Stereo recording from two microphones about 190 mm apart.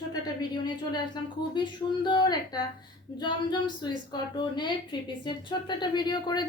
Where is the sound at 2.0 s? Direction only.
20° left (ahead or behind).